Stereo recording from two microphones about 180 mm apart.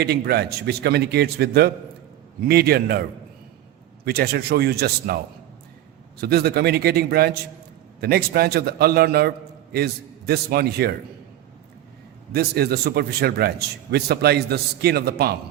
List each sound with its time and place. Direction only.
0.0 s a man's voice: 65° right (ahead or behind)
12.3 s a man's voice: 60° right (ahead or behind)